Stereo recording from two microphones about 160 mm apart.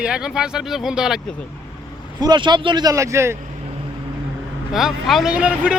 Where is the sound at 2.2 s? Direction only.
25° right (ahead or behind).